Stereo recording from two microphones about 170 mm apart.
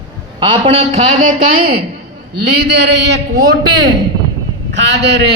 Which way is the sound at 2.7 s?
90° right.